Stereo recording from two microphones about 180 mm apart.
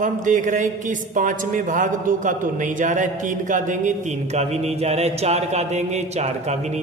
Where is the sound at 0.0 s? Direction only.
45° right (ahead or behind).